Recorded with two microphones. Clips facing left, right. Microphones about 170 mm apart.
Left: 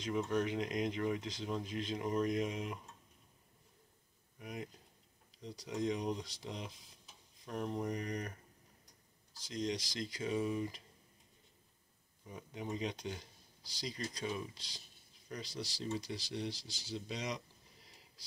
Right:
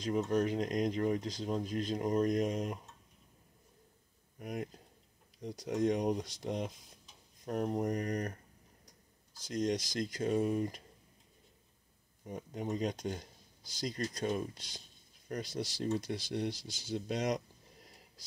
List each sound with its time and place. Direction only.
0.3 s speech: 40° right (ahead or behind)
4.4 s speech: 50° right (ahead or behind)
9.4 s speech: 45° right (ahead or behind)
12.3 s speech: 45° right (ahead or behind)